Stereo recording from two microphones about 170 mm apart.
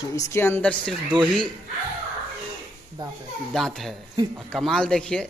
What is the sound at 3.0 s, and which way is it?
Speech, 25° right (ahead or behind).